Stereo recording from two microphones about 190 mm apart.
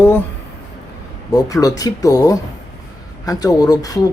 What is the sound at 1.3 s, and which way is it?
Speech, 20° left (ahead or behind).